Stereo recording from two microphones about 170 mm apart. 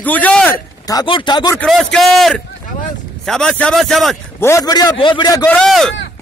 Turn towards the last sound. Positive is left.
turn(degrees=0)  # may be behind; listen again after turning